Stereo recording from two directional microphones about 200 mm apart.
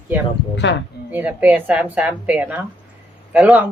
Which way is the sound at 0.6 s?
60° left (ahead or behind).